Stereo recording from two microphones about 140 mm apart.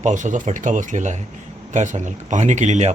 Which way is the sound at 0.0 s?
60° right (ahead or behind).